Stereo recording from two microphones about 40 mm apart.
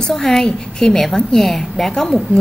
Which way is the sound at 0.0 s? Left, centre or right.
Centre.